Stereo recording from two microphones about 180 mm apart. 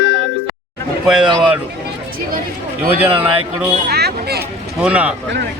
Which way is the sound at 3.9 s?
65° right (ahead or behind).